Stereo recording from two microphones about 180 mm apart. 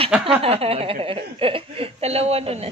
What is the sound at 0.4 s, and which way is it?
Speech, 35° right (ahead or behind).